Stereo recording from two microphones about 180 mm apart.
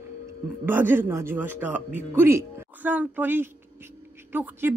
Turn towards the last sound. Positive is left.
turn(degrees=-10)  # may be behind; listen again after turning